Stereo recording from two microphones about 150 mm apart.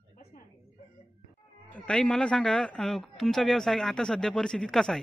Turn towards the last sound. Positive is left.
turn(degrees=0)  # may be behind; listen again after turning